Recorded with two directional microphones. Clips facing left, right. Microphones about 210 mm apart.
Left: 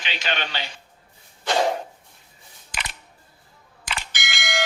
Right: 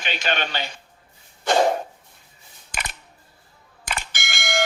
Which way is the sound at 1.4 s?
50° right (ahead or behind).